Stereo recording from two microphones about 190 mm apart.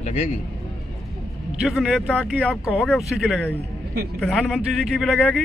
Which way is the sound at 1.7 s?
Centre (ahead or behind).